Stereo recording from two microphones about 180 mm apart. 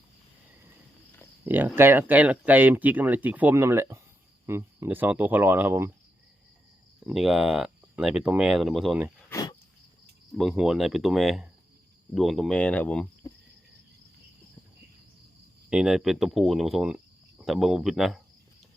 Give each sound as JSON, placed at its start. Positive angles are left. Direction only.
{"t": 1.5, "sound": "speech", "side_deg": -10}
{"t": 7.0, "sound": "speech", "side_deg": 0}
{"t": 9.3, "sound": "a sound", "side_deg": 20}
{"t": 10.3, "sound": "speech", "side_deg": 0}
{"t": 15.7, "sound": "speech", "side_deg": -5}